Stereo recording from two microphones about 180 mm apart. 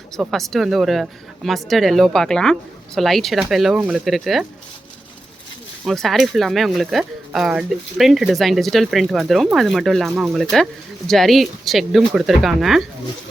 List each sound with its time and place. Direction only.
0.2 s speech: centre (ahead or behind)
5.8 s speech: centre (ahead or behind)